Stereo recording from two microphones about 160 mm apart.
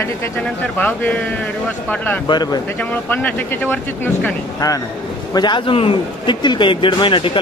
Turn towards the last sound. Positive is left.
turn(degrees=30)  # may be behind; listen again after turning